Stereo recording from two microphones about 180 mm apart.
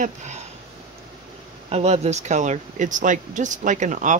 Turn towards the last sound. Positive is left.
turn(degrees=-45)  # may be behind; listen again after turning